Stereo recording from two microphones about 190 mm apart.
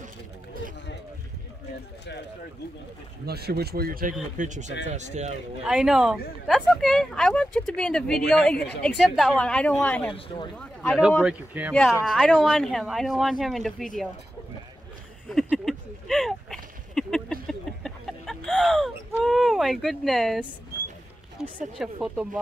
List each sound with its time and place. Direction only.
3.3 s speech: 55° right (ahead or behind); by 5.3 s 40° right (ahead or behind)
5.7 s speech: 5° right (ahead or behind)
10.1 s speech: 25° left (ahead or behind)
10.6 s speech: centre (ahead or behind)
11.7 s speech: 10° left (ahead or behind)
15.2 s a sound: centre (ahead or behind)
19.2 s speech: centre (ahead or behind)
21.4 s a sound: 5° right (ahead or behind)
22.0 s speech: 5° right (ahead or behind)